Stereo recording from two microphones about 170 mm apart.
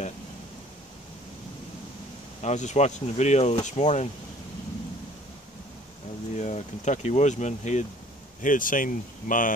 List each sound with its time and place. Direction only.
2.4 s speech: 45° left (ahead or behind)
6.3 s speech: 45° left (ahead or behind)